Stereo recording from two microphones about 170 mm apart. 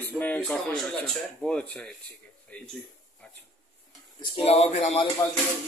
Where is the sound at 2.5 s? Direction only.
10° left (ahead or behind).